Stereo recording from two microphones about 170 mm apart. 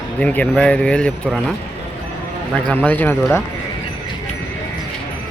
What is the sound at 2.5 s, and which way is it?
Speech, 10° left (ahead or behind).